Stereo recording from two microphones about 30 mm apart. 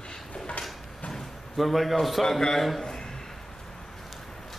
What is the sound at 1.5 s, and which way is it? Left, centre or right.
Speech, centre.